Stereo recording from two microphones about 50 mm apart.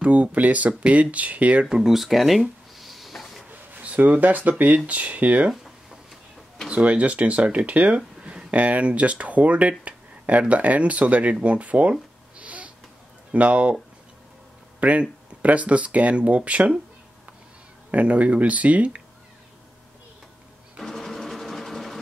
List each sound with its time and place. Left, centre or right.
0.0 s speech: right
1.8 s a sound: centre
3.7 s speech: right
5.5 s a sound: centre
6.7 s speech: right
12.4 s a sound: right
13.3 s speech: right
14.8 s speech: right
17.9 s speech: right
20.8 s sewing machine: centre